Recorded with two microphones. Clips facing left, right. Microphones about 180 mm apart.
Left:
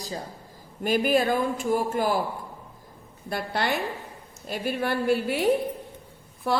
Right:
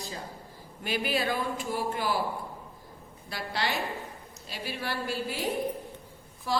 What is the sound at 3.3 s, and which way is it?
Speech, 55° left (ahead or behind).